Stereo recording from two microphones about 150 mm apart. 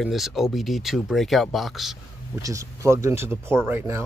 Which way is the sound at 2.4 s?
20° right (ahead or behind).